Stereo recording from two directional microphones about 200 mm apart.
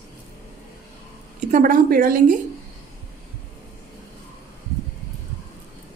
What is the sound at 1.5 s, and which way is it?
Speech, 45° right (ahead or behind).